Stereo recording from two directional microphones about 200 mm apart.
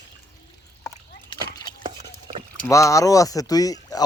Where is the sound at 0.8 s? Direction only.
15° left (ahead or behind).